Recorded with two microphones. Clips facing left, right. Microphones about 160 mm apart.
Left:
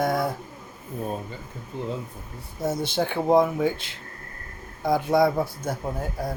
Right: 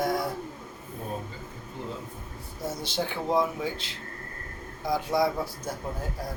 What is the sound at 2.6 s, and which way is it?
Speech, 55° left (ahead or behind).